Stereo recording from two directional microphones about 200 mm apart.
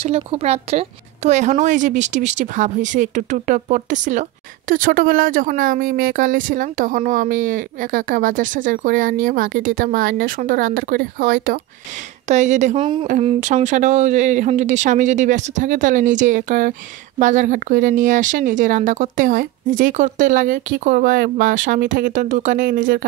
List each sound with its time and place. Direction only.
0.0 s speech: 30° right (ahead or behind)
12.7 s speech: 25° right (ahead or behind); by 23.0 s 45° right (ahead or behind)